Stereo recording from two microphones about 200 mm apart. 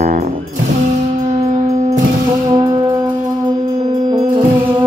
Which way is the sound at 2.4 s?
20° right (ahead or behind).